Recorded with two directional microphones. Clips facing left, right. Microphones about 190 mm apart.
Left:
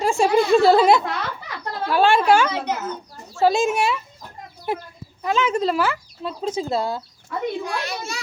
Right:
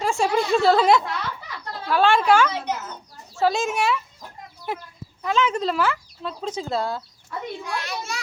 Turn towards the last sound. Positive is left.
turn(degrees=35)  # may be behind; listen again after turning